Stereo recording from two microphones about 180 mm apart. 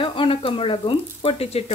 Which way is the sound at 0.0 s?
30° left (ahead or behind).